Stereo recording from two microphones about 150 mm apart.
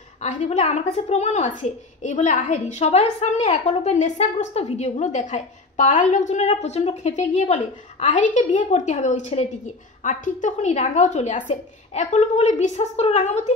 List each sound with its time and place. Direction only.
0.2 s a woman's voice: 50° left (ahead or behind)